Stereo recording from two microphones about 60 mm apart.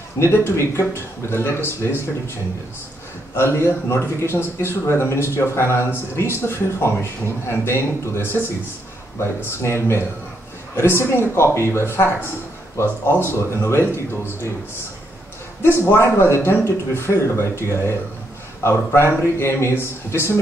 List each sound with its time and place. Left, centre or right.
0.2 s speech: left
3.3 s speech: left
15.6 s speech: left